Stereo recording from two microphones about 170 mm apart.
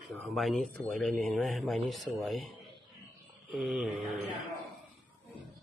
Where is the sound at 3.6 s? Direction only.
Centre (ahead or behind).